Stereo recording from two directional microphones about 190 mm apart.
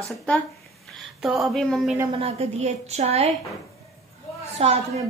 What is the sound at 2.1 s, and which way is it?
A woman's voice, 35° right (ahead or behind).